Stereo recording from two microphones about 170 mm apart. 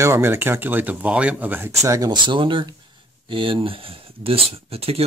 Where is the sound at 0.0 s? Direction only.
15° right (ahead or behind).